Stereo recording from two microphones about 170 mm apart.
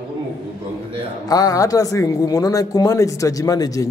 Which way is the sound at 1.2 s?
20° left (ahead or behind).